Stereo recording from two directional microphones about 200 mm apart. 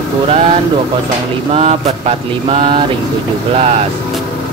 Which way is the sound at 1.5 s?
30° right (ahead or behind).